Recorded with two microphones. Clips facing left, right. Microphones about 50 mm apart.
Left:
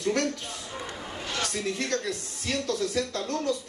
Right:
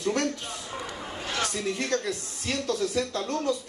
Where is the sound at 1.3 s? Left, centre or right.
Right.